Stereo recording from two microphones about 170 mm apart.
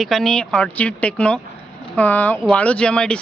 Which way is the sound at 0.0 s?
Centre (ahead or behind).